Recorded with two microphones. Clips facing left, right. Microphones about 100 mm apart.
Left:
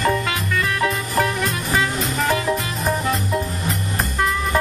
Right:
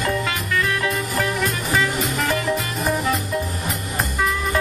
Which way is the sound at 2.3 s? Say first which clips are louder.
Left 1 dB; centre (ahead or behind).